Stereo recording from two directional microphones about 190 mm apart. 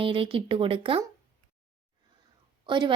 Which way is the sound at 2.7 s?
25° right (ahead or behind).